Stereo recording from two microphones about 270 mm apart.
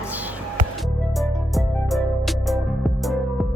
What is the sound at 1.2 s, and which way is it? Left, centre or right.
Music, centre.